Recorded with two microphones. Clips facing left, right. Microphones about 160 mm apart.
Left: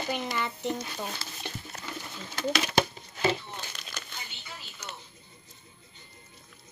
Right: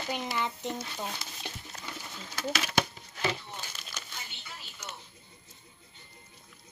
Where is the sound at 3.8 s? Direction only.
20° left (ahead or behind).